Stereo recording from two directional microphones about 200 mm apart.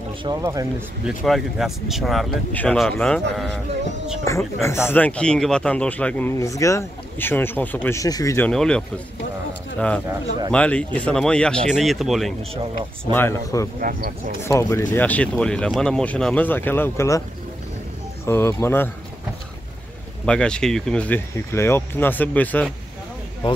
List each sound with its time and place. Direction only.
0.2 s speech: 15° right (ahead or behind)
1.0 s speech: centre (ahead or behind); by 8.5 s 15° left (ahead or behind)
8.5 s speech: 5° left (ahead or behind)
13.1 s speech: 10° left (ahead or behind)
13.7 s speech: 45° right (ahead or behind)
14.4 s speech: 15° left (ahead or behind)
18.2 s speech: 15° left (ahead or behind)
20.2 s speech: 5° left (ahead or behind)